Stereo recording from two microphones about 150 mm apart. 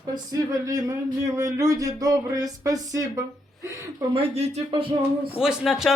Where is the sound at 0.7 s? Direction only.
25° right (ahead or behind).